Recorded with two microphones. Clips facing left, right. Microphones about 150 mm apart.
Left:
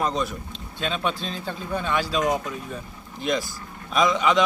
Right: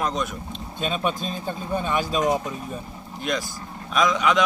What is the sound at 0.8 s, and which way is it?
Speech, 10° right (ahead or behind).